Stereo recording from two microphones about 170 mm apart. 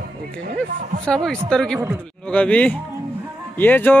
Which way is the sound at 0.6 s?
5° left (ahead or behind).